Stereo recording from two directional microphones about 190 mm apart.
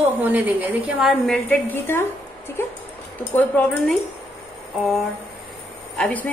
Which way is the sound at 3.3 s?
10° left (ahead or behind).